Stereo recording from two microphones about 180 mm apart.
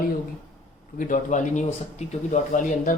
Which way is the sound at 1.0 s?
45° left (ahead or behind).